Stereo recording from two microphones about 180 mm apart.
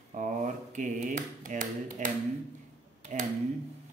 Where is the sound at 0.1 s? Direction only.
45° right (ahead or behind).